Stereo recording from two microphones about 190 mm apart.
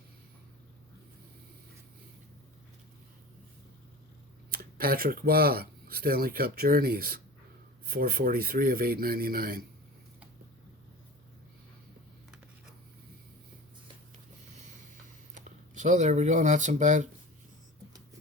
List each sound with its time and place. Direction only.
4.5 s speech: 50° right (ahead or behind)
15.4 s speech: 40° right (ahead or behind)